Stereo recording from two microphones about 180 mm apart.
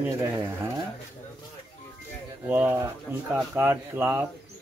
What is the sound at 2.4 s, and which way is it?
Speech, 10° right (ahead or behind).